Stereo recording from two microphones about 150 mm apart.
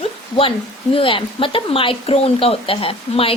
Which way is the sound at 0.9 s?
35° left (ahead or behind).